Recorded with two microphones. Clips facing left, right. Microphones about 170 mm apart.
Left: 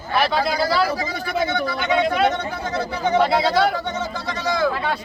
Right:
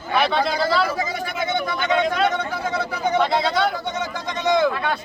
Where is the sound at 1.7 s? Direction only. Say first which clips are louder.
Left 1 dB; 5° left (ahead or behind).